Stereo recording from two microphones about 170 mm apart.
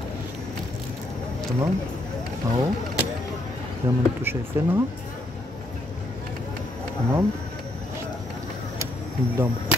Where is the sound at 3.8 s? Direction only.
15° right (ahead or behind).